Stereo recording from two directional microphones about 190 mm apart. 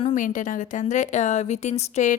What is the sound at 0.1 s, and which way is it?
A woman's voice, 45° left (ahead or behind).